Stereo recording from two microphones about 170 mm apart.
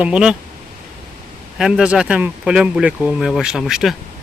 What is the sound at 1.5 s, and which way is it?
Speech, 5° right (ahead or behind).